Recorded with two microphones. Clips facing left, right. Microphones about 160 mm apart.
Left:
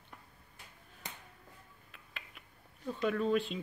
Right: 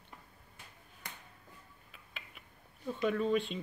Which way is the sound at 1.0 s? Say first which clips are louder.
Left 2 dB; 20° left (ahead or behind).